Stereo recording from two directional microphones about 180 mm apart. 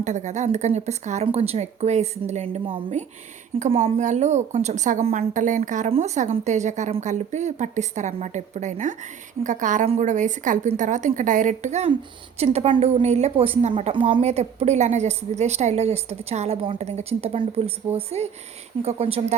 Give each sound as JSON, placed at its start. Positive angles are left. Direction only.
{"t": 0.0, "sound": "a woman's voice", "side_deg": -40}